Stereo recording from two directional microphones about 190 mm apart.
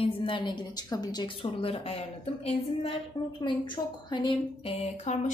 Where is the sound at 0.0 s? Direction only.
25° left (ahead or behind).